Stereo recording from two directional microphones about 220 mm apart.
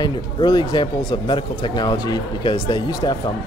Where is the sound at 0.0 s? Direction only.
20° left (ahead or behind).